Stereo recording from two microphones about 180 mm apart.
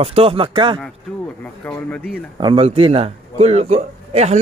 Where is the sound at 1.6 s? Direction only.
10° left (ahead or behind).